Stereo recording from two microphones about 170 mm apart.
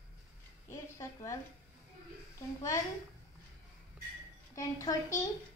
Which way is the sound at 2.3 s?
20° left (ahead or behind).